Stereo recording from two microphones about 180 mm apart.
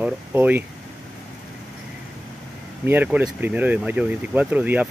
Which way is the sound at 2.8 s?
10° right (ahead or behind).